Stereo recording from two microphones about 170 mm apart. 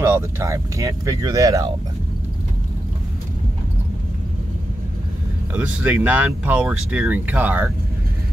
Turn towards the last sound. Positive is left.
turn(degrees=-10)  # may be behind; listen again after turning